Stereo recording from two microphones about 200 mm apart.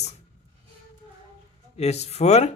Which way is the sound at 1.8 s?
30° left (ahead or behind).